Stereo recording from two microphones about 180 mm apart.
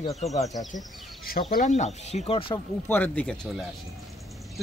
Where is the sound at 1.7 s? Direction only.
35° left (ahead or behind).